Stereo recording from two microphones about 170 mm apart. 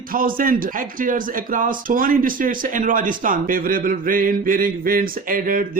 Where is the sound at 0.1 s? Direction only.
55° right (ahead or behind).